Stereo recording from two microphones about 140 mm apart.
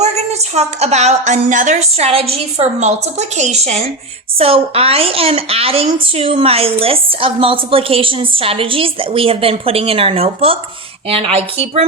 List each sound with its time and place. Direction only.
0.0 s a woman's voice: 50° right (ahead or behind)